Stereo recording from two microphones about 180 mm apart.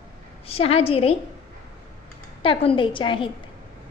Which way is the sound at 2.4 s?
30° left (ahead or behind).